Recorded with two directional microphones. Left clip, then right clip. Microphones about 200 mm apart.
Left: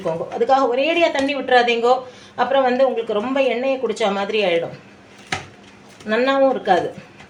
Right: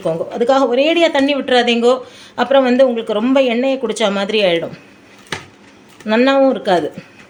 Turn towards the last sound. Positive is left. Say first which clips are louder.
# right 3 dB
turn(degrees=-45)  # may be behind; listen again after turning